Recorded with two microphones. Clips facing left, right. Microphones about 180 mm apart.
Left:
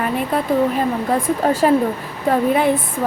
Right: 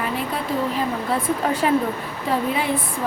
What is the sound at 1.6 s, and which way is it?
Speech, 40° left (ahead or behind).